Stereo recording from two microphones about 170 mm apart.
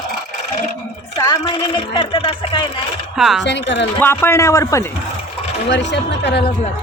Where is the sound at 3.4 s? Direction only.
90° left.